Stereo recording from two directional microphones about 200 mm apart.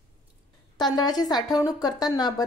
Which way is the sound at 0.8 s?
20° left (ahead or behind).